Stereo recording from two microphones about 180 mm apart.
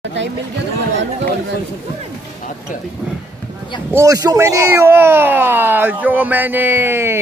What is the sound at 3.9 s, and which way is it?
Speech, 20° right (ahead or behind).